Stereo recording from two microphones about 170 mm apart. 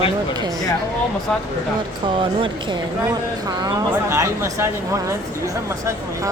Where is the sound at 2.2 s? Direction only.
30° right (ahead or behind).